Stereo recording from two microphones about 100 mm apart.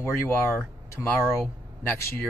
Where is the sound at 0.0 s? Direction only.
25° left (ahead or behind).